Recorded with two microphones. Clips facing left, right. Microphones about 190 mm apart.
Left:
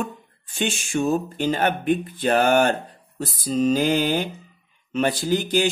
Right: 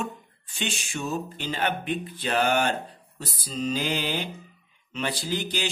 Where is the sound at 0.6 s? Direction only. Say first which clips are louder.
Left 8 dB; 50° left (ahead or behind).